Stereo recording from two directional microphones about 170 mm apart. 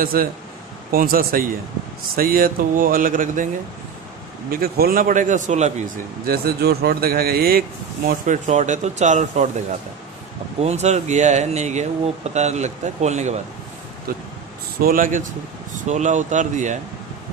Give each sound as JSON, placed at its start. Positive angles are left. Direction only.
{"t": 0.0, "sound": "speech", "side_deg": -55}
{"t": 4.5, "sound": "speech", "side_deg": -60}
{"t": 6.2, "sound": "speech", "side_deg": -65}
{"t": 8.1, "sound": "speech", "side_deg": -45}
{"t": 10.6, "sound": "speech", "side_deg": -40}
{"t": 14.1, "sound": "speech", "side_deg": -60}